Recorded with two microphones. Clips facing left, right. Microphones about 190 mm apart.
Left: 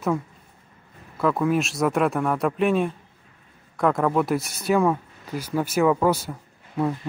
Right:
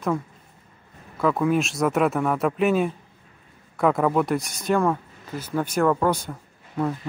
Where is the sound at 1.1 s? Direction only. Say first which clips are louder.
Even; centre (ahead or behind).